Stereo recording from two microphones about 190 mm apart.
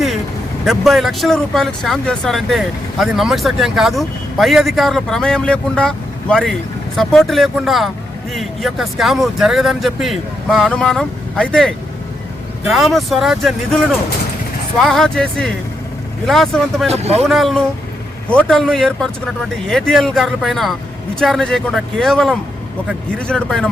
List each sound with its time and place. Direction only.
0.6 s speech: centre (ahead or behind)
14.8 s speech: centre (ahead or behind)
16.9 s speech: 35° right (ahead or behind)
17.2 s speech: centre (ahead or behind)